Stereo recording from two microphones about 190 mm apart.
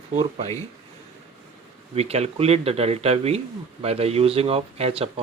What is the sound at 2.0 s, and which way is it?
Speech, 35° right (ahead or behind).